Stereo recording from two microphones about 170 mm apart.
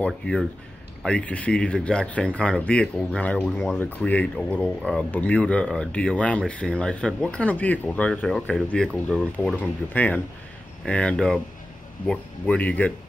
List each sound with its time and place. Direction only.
0.0 s speech: 5° left (ahead or behind)